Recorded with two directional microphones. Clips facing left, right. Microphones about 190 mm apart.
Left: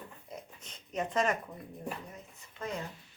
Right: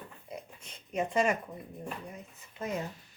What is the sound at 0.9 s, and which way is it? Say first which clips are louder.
Speech: right 2 dB; 10° right (ahead or behind).